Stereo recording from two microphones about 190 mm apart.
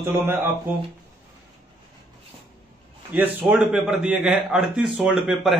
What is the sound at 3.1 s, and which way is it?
A man's voice, 10° right (ahead or behind).